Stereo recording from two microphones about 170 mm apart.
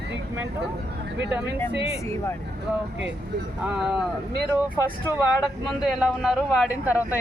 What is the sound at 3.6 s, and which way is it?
Speech, 5° right (ahead or behind).